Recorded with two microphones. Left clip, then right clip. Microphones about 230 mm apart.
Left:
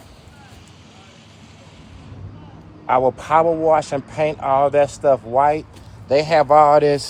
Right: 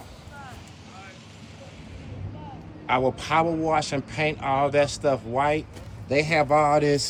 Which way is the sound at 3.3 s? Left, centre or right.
Left.